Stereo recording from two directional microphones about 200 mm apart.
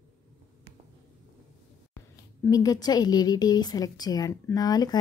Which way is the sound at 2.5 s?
15° left (ahead or behind).